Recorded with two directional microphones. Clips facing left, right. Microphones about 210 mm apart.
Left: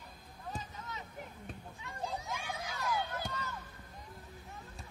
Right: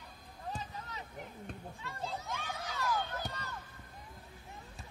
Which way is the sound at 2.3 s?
10° left (ahead or behind).